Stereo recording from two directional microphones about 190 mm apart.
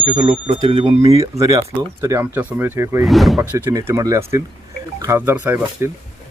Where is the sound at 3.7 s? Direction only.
15° right (ahead or behind).